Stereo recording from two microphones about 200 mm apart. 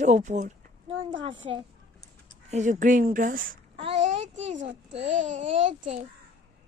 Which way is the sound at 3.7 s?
30° right (ahead or behind).